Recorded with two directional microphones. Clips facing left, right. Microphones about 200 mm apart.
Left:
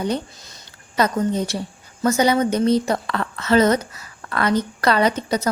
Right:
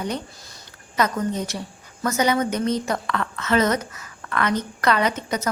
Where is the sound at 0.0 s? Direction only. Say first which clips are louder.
Left 5 dB; 25° left (ahead or behind).